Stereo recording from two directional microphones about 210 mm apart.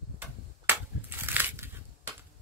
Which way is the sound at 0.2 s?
10° right (ahead or behind).